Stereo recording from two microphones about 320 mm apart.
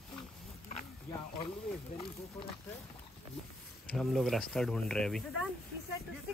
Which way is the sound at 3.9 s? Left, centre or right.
Centre.